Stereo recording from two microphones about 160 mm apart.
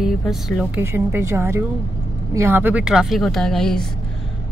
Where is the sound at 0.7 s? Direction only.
15° right (ahead or behind); by 3.8 s 5° left (ahead or behind).